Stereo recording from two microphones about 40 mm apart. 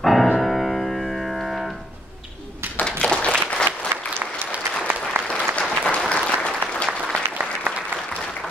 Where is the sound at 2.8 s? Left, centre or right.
Left.